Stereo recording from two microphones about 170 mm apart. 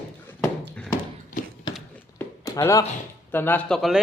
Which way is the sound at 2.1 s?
15° left (ahead or behind).